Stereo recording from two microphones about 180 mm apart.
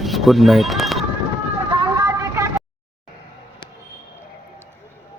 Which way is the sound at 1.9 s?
20° right (ahead or behind).